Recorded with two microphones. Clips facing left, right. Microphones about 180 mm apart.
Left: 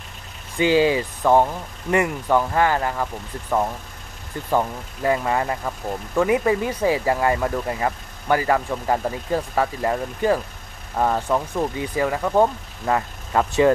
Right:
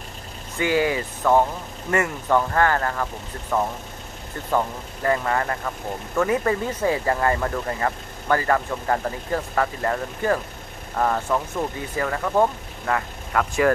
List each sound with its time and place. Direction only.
0.6 s speech: 20° left (ahead or behind)
4.5 s speech: 15° left (ahead or behind)